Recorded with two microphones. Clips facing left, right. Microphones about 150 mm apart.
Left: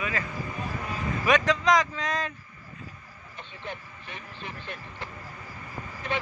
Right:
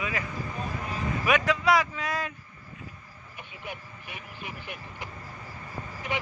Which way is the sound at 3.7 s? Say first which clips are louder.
Left 1 dB; 10° right (ahead or behind).